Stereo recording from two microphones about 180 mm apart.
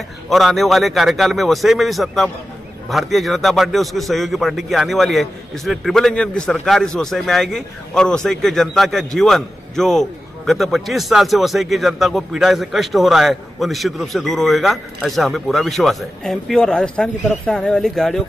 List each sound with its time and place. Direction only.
0.3 s a man's voice: centre (ahead or behind)